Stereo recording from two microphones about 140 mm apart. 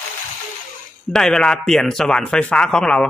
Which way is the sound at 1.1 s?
5° left (ahead or behind).